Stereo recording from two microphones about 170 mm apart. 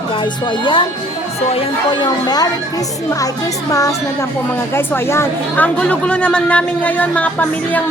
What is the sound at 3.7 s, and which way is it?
Music, 20° left (ahead or behind).